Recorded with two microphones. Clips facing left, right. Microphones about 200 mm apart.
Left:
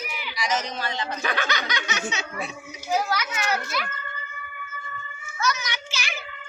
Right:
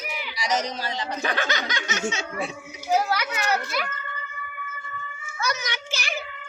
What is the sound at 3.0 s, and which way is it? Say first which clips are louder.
Speech: right 1 dB; 35° right (ahead or behind).